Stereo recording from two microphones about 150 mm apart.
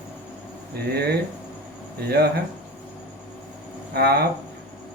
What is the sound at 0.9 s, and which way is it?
Speech, 90° right.